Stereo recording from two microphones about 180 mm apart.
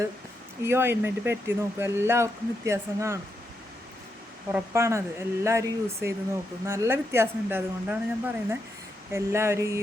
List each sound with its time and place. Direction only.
0.6 s speech: 15° right (ahead or behind)
4.5 s speech: 15° right (ahead or behind)